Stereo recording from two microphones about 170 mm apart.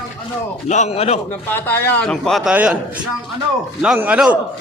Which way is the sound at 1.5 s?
10° left (ahead or behind).